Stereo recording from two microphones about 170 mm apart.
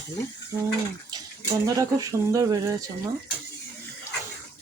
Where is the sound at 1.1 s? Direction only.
20° right (ahead or behind).